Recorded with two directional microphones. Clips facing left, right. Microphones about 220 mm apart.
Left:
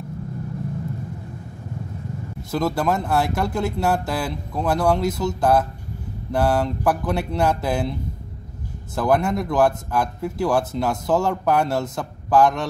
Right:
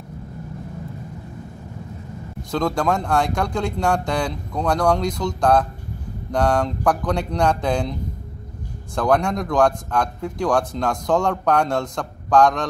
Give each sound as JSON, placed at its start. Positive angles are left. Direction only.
{"t": 2.5, "sound": "a man's voice", "side_deg": 5}
{"t": 8.9, "sound": "a man's voice", "side_deg": 5}